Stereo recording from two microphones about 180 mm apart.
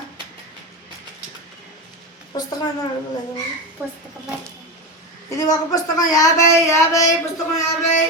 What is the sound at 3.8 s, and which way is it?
Speech, 10° right (ahead or behind).